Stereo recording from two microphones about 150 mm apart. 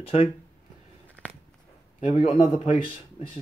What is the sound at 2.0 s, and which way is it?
Speech, 35° left (ahead or behind).